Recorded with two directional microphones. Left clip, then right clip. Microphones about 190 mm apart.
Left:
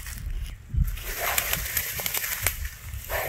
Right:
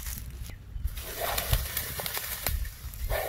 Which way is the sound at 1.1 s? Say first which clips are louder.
Left 4 dB; 5° right (ahead or behind).